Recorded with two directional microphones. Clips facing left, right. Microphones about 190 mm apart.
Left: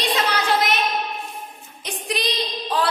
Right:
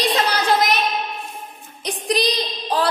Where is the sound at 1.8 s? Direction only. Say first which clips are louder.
Right 6 dB; 35° right (ahead or behind).